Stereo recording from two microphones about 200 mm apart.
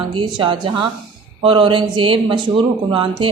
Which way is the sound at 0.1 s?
25° right (ahead or behind).